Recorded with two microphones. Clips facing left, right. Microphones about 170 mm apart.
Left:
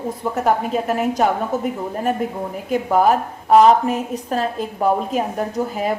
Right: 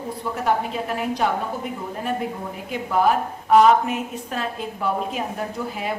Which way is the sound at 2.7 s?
45° left (ahead or behind).